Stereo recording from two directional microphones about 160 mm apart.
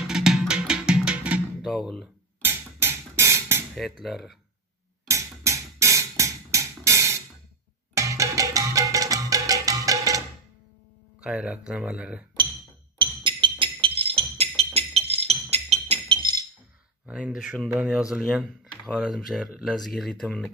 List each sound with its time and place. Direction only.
0.0 s music: 5° right (ahead or behind)
2.4 s music: 15° right (ahead or behind)
4.0 s speech: centre (ahead or behind)
5.0 s music: 20° right (ahead or behind)
11.2 s speech: 5° right (ahead or behind)
13.0 s music: 30° right (ahead or behind)
17.0 s speech: 5° right (ahead or behind)